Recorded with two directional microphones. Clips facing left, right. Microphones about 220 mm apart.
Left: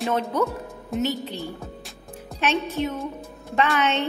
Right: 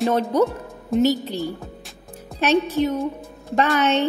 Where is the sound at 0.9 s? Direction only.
Centre (ahead or behind).